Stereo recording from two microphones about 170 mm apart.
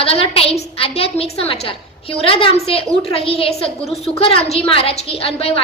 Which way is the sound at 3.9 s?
Centre (ahead or behind).